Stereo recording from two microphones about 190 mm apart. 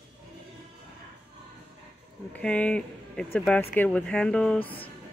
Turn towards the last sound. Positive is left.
turn(degrees=5)  # may be behind; listen again after turning